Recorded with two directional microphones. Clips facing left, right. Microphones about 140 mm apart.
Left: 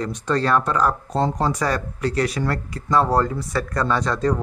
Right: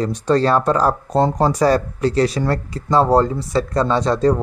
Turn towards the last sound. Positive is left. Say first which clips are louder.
# right 5 dB
turn(degrees=-30)  # may be behind; listen again after turning